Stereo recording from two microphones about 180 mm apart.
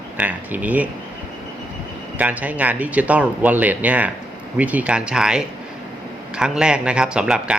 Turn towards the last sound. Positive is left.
turn(degrees=-5)  # may be behind; listen again after turning